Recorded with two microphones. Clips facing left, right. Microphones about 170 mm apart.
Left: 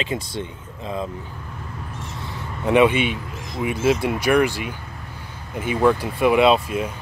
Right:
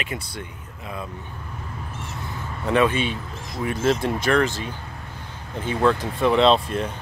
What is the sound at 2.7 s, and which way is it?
Speech, 15° left (ahead or behind).